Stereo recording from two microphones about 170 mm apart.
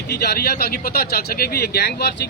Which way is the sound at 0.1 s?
75° left (ahead or behind).